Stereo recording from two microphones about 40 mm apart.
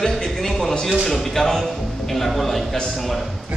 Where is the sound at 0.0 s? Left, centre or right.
Centre.